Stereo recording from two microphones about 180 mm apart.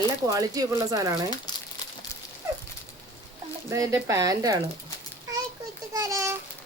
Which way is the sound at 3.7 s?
15° right (ahead or behind).